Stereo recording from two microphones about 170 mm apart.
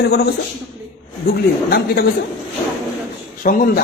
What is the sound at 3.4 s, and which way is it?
Speech, 55° left (ahead or behind).